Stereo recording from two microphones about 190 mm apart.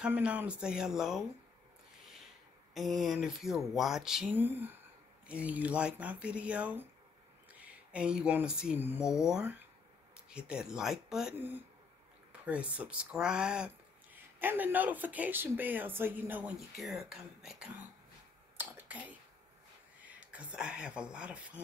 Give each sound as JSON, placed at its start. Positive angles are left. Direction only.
{"t": 0.0, "sound": "speech", "side_deg": -5}
{"t": 2.7, "sound": "speech", "side_deg": 0}
{"t": 18.6, "sound": "whispering", "side_deg": -10}
{"t": 20.0, "sound": "speech", "side_deg": -5}